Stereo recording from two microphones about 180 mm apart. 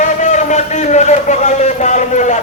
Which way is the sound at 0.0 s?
40° left (ahead or behind).